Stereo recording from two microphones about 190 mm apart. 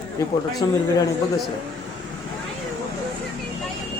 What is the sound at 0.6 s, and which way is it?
Speech, 20° left (ahead or behind).